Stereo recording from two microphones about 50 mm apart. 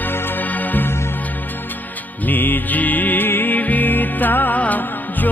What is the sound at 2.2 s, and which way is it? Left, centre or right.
Music, left.